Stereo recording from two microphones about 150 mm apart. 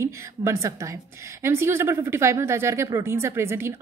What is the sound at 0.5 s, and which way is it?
A woman's voice, 20° right (ahead or behind).